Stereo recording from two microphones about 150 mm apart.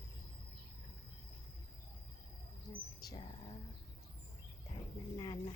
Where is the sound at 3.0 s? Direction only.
30° left (ahead or behind).